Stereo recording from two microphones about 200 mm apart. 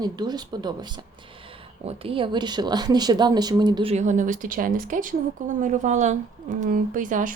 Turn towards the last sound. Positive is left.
turn(degrees=-40)  # may be behind; listen again after turning